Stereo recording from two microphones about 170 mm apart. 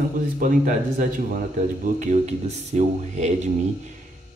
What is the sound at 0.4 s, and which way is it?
Speech, 50° right (ahead or behind).